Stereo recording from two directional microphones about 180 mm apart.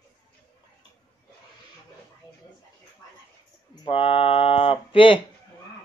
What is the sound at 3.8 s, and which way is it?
Speech, 30° left (ahead or behind).